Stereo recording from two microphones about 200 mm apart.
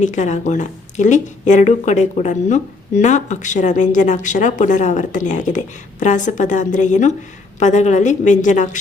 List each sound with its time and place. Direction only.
0.0 s a woman's voice: 35° left (ahead or behind)